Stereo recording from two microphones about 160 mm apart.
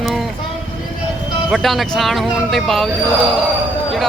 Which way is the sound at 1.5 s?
Centre (ahead or behind).